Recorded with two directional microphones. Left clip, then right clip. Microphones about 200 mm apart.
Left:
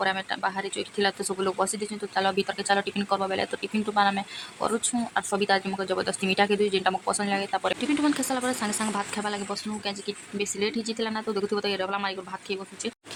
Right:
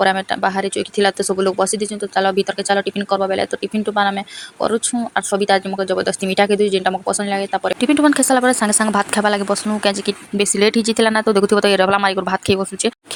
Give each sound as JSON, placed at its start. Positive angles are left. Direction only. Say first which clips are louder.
{"t": 0.0, "sound": "speech", "louder": "right 11 dB", "side_deg": -35}
{"t": 7.8, "sound": "speech", "louder": "right 11 dB", "side_deg": -40}